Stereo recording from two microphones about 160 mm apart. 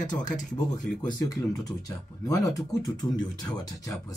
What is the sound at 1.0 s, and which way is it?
Speech, 25° left (ahead or behind).